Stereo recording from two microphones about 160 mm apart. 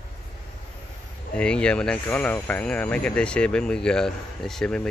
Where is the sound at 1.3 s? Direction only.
5° left (ahead or behind).